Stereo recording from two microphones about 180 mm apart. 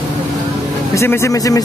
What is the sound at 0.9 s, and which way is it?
Speech, 15° left (ahead or behind).